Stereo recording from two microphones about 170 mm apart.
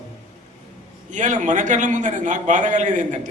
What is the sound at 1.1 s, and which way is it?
A man's voice, 45° right (ahead or behind).